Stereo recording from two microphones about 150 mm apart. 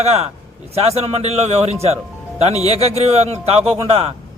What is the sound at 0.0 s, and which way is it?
A man's voice, 45° right (ahead or behind).